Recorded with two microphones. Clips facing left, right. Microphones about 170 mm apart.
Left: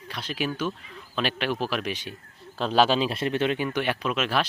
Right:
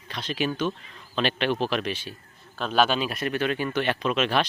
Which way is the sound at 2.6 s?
30° left (ahead or behind).